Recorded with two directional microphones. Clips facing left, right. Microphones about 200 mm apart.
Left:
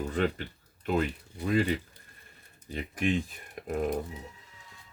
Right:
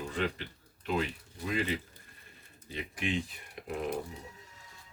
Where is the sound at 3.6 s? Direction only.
45° left (ahead or behind).